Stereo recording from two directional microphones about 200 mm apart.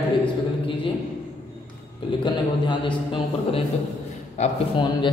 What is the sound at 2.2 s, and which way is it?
A man's voice, 25° left (ahead or behind).